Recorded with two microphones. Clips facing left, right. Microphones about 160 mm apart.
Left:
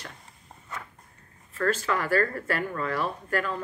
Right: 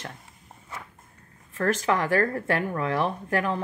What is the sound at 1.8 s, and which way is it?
Speech, 15° right (ahead or behind).